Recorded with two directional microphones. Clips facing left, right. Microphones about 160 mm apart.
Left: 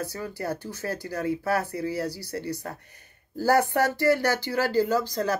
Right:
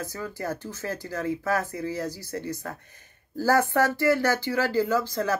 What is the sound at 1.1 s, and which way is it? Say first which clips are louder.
Speech: left 1 dB; 40° left (ahead or behind).